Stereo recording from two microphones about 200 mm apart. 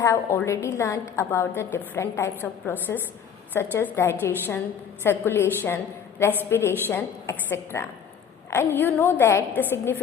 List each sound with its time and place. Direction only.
0.0 s a woman's voice: 15° left (ahead or behind)